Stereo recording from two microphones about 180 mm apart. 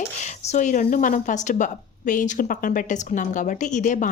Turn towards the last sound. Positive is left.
turn(degrees=45)  # may be behind; listen again after turning